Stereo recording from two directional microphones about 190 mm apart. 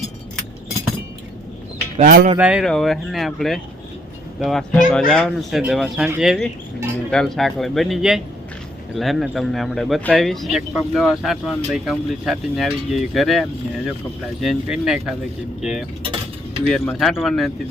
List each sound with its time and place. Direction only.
2.0 s speech: 45° right (ahead or behind)
2.4 s speech: 5° right (ahead or behind)
16.6 s speech: 5° left (ahead or behind)